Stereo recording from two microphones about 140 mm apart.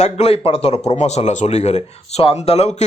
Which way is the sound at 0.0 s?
45° left (ahead or behind).